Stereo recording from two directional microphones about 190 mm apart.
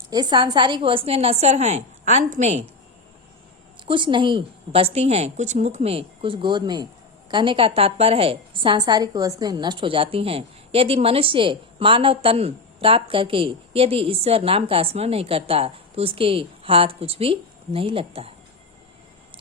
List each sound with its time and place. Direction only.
0.1 s a woman's voice: 20° right (ahead or behind)
3.8 s a woman's voice: 25° right (ahead or behind)